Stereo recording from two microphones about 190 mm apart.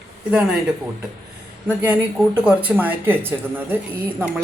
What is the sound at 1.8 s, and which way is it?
Speech, 10° right (ahead or behind).